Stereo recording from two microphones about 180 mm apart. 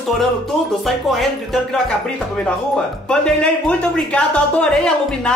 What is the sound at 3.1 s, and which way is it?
Speech, 5° left (ahead or behind).